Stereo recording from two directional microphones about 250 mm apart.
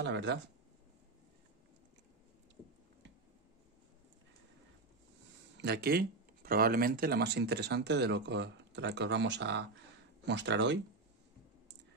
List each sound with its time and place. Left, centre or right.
0.0 s speech: right
5.6 s speech: right